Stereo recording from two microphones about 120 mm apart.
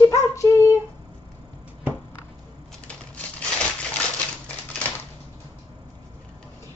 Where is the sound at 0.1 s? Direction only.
25° left (ahead or behind).